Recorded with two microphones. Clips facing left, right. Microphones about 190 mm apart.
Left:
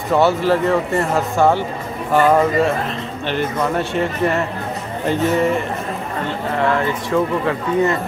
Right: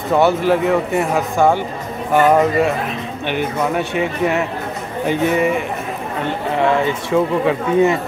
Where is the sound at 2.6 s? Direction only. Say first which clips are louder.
Even; 10° right (ahead or behind).